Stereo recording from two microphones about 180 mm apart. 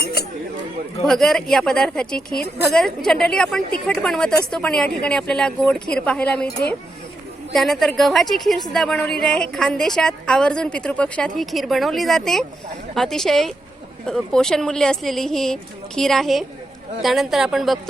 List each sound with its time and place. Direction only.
0.0 s a sound: 60° left (ahead or behind)
1.0 s a woman's voice: centre (ahead or behind)
7.5 s a woman's voice: centre (ahead or behind)